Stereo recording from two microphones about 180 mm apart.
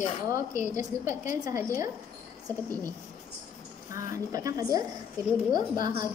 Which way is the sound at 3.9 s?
20° right (ahead or behind).